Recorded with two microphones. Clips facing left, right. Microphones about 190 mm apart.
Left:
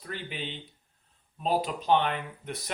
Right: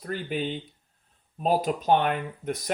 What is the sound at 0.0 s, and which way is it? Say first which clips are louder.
Speech: right 8 dB; 45° right (ahead or behind).